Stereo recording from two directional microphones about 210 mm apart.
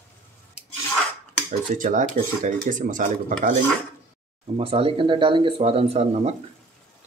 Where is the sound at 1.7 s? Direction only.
40° right (ahead or behind).